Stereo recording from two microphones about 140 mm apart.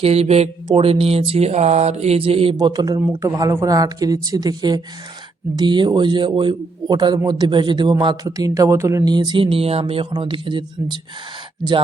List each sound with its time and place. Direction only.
0.0 s speech: 45° right (ahead or behind)
2.6 s a man's voice: 30° right (ahead or behind)